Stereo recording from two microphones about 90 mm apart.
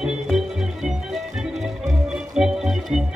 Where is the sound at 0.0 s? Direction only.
5° right (ahead or behind).